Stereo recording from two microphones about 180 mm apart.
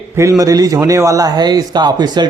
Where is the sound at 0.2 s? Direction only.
15° right (ahead or behind).